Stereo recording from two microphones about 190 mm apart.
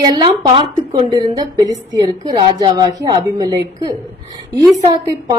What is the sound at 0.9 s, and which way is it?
A woman's voice, 20° right (ahead or behind).